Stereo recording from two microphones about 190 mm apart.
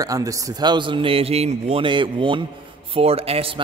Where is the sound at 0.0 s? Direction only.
20° right (ahead or behind).